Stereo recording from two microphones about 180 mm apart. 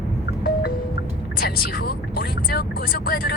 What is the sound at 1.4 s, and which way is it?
Speech, 55° left (ahead or behind).